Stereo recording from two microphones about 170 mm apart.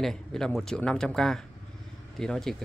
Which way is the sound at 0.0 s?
5° left (ahead or behind).